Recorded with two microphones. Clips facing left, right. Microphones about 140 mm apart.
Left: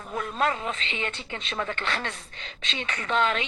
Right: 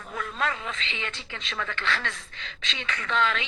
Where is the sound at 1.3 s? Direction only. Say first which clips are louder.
Left 3 dB; 35° left (ahead or behind).